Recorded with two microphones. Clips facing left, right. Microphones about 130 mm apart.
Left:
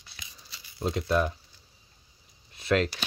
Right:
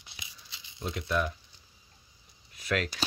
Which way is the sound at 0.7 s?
30° left (ahead or behind).